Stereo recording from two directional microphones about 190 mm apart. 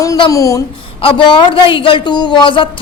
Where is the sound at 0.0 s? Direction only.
20° left (ahead or behind).